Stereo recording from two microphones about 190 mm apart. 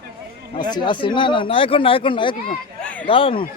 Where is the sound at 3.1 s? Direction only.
25° left (ahead or behind).